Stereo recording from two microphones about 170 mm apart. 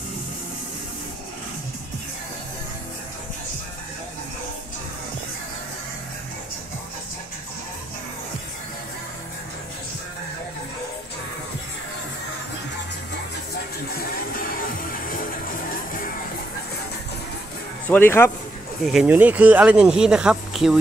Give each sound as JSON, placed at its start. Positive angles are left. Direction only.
{"t": 13.9, "sound": "music", "side_deg": 60}
{"t": 17.8, "sound": "speech", "side_deg": 10}
{"t": 18.9, "sound": "speech", "side_deg": -5}